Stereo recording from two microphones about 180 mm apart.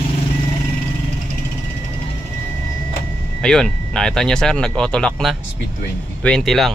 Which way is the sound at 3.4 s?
5° left (ahead or behind).